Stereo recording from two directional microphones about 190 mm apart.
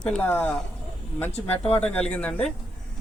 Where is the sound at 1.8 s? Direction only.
5° left (ahead or behind).